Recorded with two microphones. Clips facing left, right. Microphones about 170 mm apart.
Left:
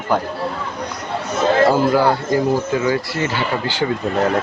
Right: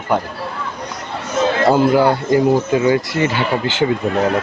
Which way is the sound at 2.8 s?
20° right (ahead or behind).